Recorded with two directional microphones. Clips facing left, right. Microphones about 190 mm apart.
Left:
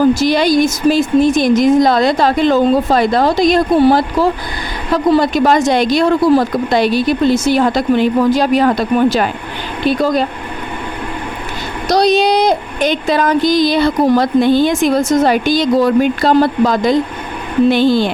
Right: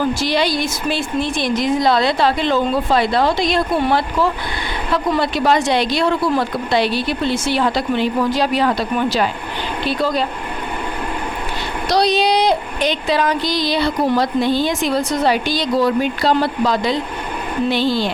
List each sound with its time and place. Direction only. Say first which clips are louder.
0.0 s speech: left 7 dB; 45° left (ahead or behind)
11.9 s speech: left 4 dB; 45° left (ahead or behind)